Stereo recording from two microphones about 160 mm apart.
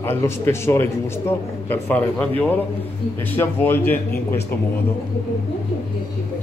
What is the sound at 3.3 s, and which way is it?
A man's voice, 10° left (ahead or behind).